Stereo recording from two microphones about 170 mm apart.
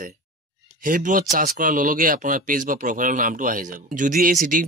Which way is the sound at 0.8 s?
50° right (ahead or behind).